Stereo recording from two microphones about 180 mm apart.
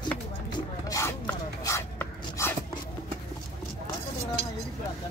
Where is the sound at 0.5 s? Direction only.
20° left (ahead or behind).